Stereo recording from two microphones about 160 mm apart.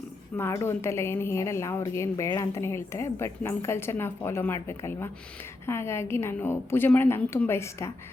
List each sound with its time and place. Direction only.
0.3 s a woman's voice: 15° left (ahead or behind)